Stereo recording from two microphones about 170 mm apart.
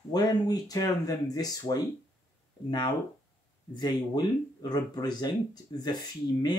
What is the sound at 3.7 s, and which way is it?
Speech, 25° left (ahead or behind).